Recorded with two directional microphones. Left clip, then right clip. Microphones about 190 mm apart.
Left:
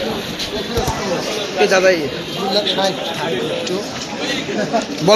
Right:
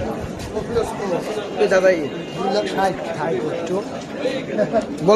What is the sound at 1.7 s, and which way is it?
Speech, 25° left (ahead or behind).